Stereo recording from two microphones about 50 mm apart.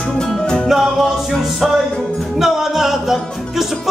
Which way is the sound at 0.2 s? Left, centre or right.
Centre.